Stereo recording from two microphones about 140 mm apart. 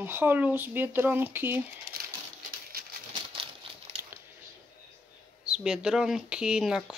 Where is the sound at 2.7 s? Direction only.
90° right.